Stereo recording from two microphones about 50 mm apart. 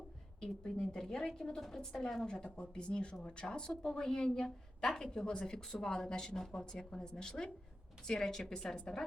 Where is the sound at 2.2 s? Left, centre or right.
Left.